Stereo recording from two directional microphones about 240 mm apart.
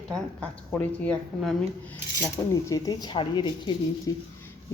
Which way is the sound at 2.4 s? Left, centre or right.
Centre.